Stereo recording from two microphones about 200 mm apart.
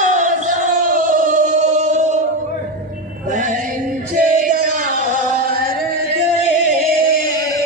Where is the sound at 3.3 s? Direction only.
40° right (ahead or behind).